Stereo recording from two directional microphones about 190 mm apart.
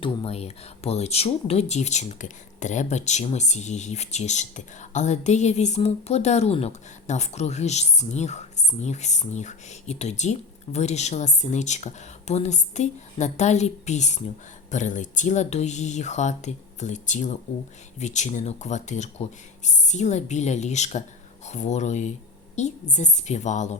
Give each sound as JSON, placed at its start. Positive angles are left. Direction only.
{"t": 0.0, "sound": "speech", "side_deg": 30}